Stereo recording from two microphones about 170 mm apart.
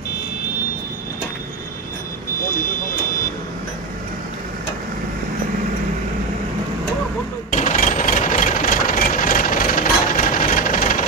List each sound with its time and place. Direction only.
7.5 s engine: 45° left (ahead or behind)